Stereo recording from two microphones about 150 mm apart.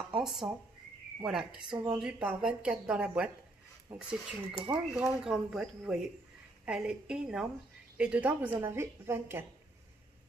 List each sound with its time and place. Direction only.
0.1 s a sound: centre (ahead or behind)
1.2 s speech: 5° right (ahead or behind)
1.7 s speech: 30° right (ahead or behind)
2.0 s a woman's voice: 5° right (ahead or behind)